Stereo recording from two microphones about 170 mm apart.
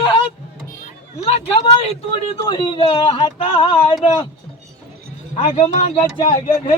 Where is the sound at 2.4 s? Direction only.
25° left (ahead or behind).